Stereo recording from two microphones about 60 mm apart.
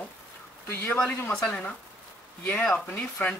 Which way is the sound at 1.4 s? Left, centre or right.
Left.